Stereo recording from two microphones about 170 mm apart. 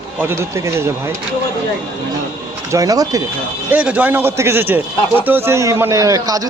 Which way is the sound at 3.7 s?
10° right (ahead or behind).